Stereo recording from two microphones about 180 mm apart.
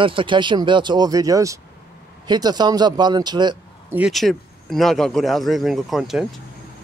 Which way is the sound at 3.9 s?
5° right (ahead or behind).